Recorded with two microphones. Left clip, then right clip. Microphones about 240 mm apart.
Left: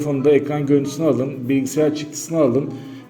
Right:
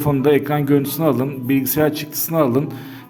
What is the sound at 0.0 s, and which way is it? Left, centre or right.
A man's voice, right.